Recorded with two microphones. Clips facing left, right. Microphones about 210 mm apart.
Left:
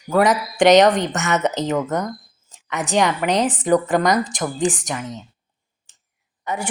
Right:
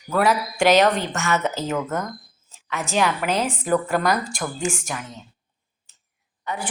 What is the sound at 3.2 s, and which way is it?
Speech, 20° left (ahead or behind).